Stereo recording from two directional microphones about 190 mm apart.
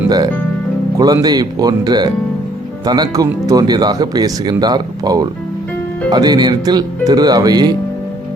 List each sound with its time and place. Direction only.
0.9 s speech: 20° right (ahead or behind)